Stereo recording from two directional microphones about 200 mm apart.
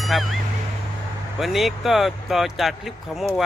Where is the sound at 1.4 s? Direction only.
Centre (ahead or behind).